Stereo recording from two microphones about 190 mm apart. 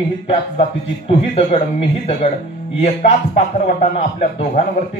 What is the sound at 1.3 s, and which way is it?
A man's voice, 30° left (ahead or behind).